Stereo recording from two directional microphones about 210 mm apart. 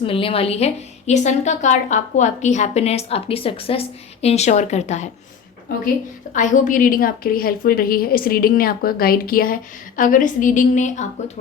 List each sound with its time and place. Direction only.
0.0 s a woman's voice: 25° left (ahead or behind)
6.3 s a woman's voice: 35° left (ahead or behind)